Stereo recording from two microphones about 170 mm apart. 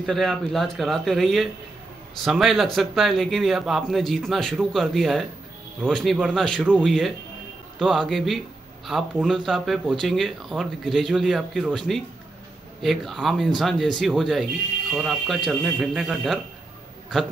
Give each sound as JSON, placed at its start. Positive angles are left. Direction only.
{"t": 0.0, "sound": "speech", "side_deg": 0}